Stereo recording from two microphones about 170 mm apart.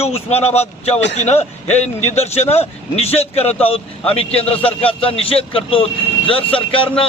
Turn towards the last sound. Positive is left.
turn(degrees=30)  # may be behind; listen again after turning